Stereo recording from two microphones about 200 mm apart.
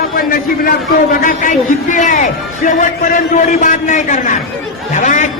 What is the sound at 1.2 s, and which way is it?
A man's voice, 40° left (ahead or behind).